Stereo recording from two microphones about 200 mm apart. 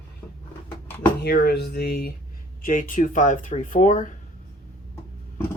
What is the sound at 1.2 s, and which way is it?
Speech, 55° left (ahead or behind).